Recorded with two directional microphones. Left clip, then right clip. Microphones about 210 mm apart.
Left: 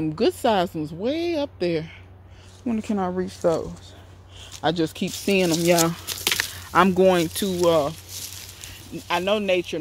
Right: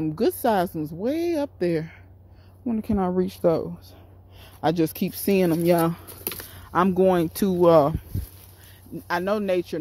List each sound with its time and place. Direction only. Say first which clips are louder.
0.0 s speech: left 1 dB; 15° right (ahead or behind)
3.0 s speech: right 2 dB; 30° right (ahead or behind)
5.8 s speech: left 2 dB; 10° right (ahead or behind)
7.4 s speech: right 5 dB; 30° right (ahead or behind)
9.0 s speech: left 2 dB; 25° right (ahead or behind)